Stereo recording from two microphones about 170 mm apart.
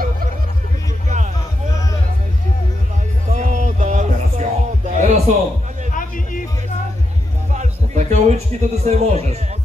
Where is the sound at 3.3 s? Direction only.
45° right (ahead or behind).